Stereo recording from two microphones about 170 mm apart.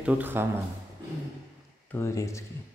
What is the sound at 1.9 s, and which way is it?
Speech, 15° left (ahead or behind).